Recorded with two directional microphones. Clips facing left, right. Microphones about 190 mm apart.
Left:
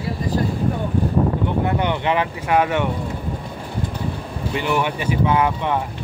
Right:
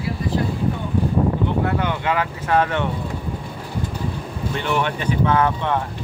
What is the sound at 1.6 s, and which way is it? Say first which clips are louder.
Speech: left 1 dB; 20° left (ahead or behind).